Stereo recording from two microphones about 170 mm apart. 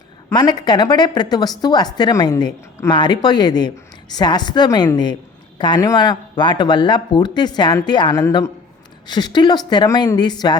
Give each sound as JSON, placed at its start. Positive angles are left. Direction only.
{"t": 0.3, "sound": "a woman's voice", "side_deg": 25}